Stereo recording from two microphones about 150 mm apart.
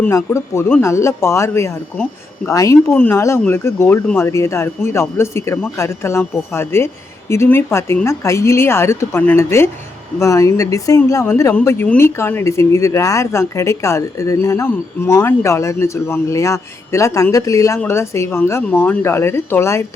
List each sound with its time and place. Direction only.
0.0 s speech: 20° left (ahead or behind)